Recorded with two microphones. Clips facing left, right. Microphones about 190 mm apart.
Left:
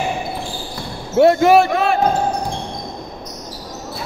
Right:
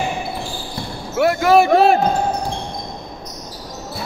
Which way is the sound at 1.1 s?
25° left (ahead or behind).